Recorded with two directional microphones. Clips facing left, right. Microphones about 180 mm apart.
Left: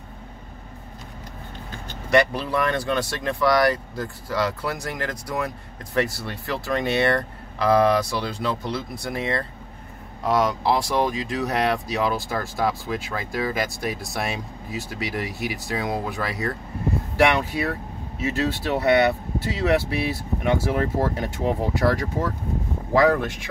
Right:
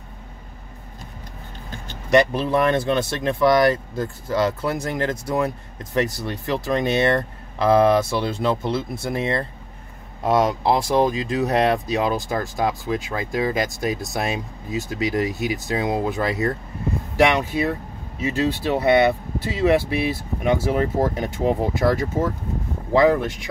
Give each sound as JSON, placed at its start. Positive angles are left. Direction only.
{"t": 2.0, "sound": "speech", "side_deg": -20}